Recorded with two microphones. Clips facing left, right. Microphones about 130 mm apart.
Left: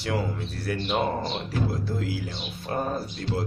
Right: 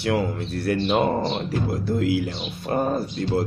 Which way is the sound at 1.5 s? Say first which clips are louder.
Right 4 dB; 60° right (ahead or behind).